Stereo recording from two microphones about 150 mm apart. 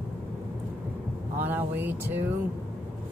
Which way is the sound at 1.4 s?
15° right (ahead or behind).